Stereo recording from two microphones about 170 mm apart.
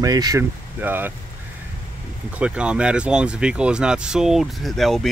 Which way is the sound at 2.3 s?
5° right (ahead or behind).